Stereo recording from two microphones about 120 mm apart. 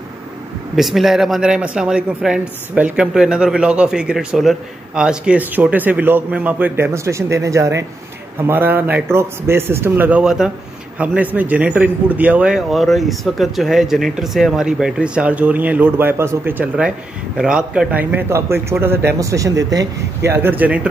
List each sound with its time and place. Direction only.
0.7 s a man's voice: centre (ahead or behind)
10.2 s a man's voice: 5° right (ahead or behind)